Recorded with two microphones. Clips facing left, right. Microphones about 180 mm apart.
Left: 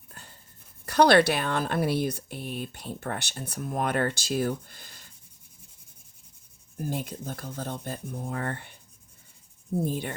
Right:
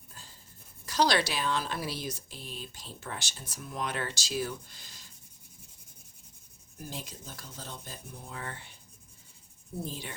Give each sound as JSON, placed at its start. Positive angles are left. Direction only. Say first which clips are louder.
{"t": 0.1, "sound": "writing", "louder": "left 4 dB", "side_deg": 60}
{"t": 0.9, "sound": "speech", "louder": "left 8 dB", "side_deg": 60}
{"t": 6.7, "sound": "speech", "louder": "left 10 dB", "side_deg": 55}
{"t": 9.8, "sound": "speech", "louder": "left 8 dB", "side_deg": 55}